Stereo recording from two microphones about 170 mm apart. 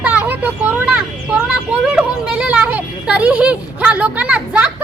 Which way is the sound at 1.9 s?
5° right (ahead or behind).